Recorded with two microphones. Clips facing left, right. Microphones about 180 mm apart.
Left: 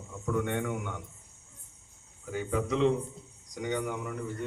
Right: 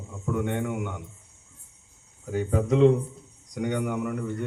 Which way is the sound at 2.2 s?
40° right (ahead or behind).